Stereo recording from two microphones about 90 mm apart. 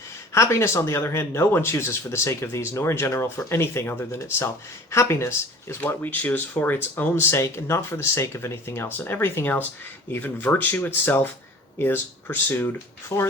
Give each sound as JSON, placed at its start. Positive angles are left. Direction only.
{"t": 0.3, "sound": "speech", "side_deg": 30}
{"t": 7.3, "sound": "speech", "side_deg": 30}
{"t": 13.1, "sound": "speech", "side_deg": 30}